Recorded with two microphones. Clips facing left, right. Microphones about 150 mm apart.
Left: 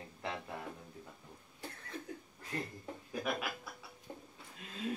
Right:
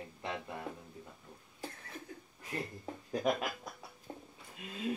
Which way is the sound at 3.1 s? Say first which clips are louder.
Right 5 dB; 40° right (ahead or behind).